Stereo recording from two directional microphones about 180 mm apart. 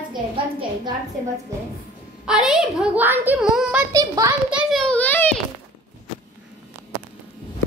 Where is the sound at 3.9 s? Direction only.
20° right (ahead or behind).